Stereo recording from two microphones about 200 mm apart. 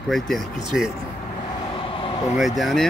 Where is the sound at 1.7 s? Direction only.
25° left (ahead or behind).